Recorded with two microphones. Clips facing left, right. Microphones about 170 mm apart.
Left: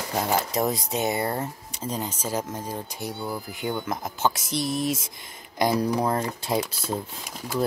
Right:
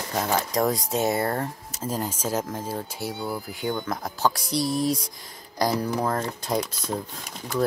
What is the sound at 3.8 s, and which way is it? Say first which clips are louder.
Speech: left 1 dB; 20° left (ahead or behind).